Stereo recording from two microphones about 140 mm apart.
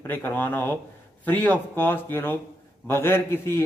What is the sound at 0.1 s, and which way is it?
Speech, 15° left (ahead or behind).